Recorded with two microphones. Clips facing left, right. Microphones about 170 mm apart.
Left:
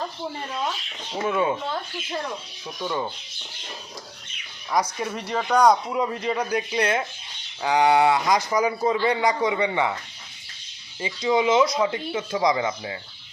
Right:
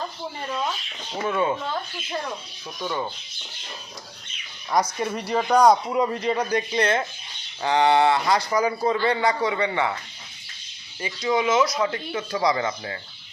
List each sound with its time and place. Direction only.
1.1 s speech: 10° left (ahead or behind)
2.8 s speech: centre (ahead or behind)
4.7 s speech: 5° left (ahead or behind)
11.0 s speech: 20° left (ahead or behind)